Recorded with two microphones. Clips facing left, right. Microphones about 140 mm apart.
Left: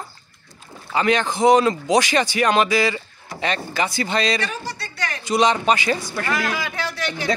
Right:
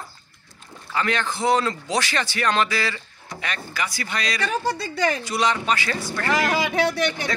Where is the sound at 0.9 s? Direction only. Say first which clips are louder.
Left 5 dB; 20° left (ahead or behind).